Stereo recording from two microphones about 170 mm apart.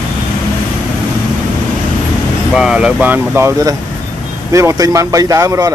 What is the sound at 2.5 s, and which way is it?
Speech, 5° right (ahead or behind).